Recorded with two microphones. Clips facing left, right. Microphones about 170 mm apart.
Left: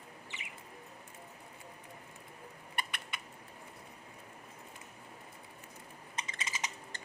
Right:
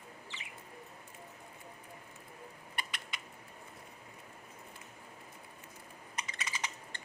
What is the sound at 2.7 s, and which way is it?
Rodents, 55° left (ahead or behind).